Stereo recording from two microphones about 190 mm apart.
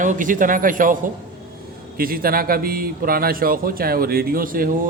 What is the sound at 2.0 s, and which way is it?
A man's voice, 50° right (ahead or behind).